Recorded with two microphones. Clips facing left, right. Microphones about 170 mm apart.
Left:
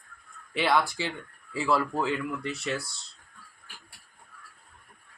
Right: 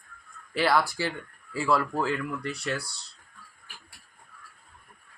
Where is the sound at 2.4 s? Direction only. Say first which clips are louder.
Even; 20° left (ahead or behind).